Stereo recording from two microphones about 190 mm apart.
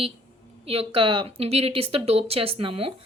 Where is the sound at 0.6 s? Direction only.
30° right (ahead or behind).